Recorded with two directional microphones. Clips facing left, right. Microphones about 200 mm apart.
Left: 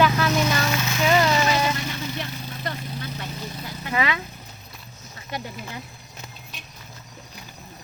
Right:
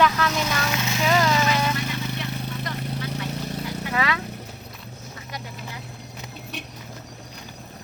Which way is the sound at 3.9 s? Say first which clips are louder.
Left 2 dB; 5° left (ahead or behind).